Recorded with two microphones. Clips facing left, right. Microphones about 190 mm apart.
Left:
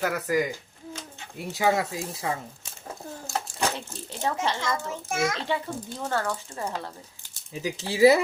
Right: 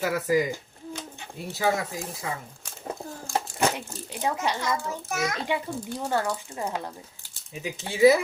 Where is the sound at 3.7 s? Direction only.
15° right (ahead or behind).